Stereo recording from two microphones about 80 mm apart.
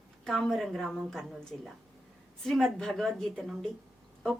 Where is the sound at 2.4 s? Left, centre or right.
Centre.